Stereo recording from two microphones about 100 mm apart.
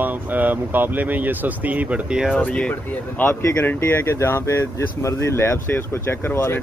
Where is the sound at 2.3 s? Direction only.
15° left (ahead or behind).